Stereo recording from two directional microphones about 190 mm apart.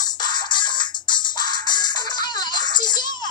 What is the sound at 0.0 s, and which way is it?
Music, 20° left (ahead or behind).